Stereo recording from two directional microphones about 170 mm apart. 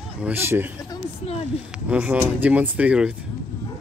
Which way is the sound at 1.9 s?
10° right (ahead or behind).